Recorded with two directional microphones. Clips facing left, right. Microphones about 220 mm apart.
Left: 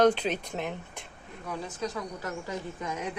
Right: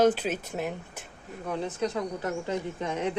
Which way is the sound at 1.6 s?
25° right (ahead or behind).